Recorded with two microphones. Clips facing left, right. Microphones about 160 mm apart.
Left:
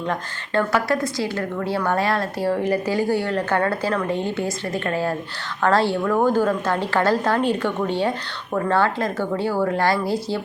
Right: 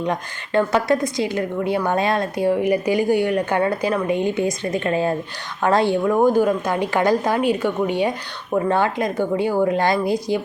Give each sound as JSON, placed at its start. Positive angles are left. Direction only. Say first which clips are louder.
{"t": 0.0, "sound": "a woman's voice", "louder": "right 2 dB", "side_deg": -15}